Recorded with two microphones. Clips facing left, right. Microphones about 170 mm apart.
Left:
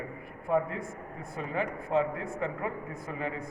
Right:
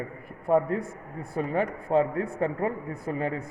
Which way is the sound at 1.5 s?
35° right (ahead or behind).